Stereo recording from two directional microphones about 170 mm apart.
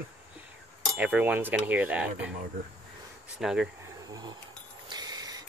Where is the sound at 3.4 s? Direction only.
5° right (ahead or behind).